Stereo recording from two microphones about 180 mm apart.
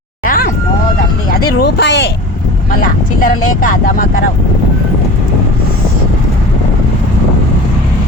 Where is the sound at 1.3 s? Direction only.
60° left (ahead or behind); by 2.1 s 75° left (ahead or behind).